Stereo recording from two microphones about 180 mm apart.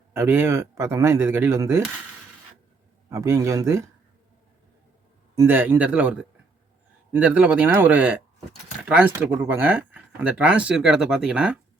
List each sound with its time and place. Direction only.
0.1 s speech: 15° right (ahead or behind)
3.1 s speech: 15° right (ahead or behind)
5.3 s speech: 15° right (ahead or behind)